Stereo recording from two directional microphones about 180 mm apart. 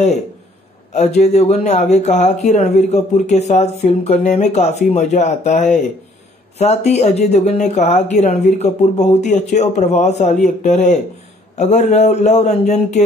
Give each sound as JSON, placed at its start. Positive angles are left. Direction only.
{"t": 0.9, "sound": "speech", "side_deg": 40}